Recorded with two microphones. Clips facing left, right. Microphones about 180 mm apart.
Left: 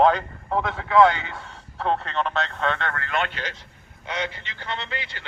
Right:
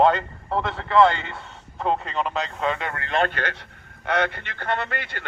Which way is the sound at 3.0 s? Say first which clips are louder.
Right 2 dB; 30° right (ahead or behind).